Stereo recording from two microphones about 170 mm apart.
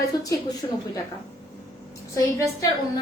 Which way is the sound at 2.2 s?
20° left (ahead or behind).